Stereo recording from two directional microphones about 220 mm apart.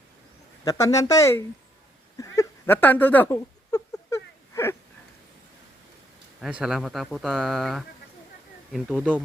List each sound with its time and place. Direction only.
0.6 s speech: 15° left (ahead or behind)
2.1 s a sound: 15° left (ahead or behind)
6.4 s speech: centre (ahead or behind)